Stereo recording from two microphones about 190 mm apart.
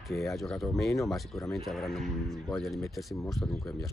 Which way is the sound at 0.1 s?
Centre (ahead or behind).